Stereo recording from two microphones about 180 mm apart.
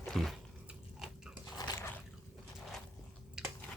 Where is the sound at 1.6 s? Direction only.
20° left (ahead or behind).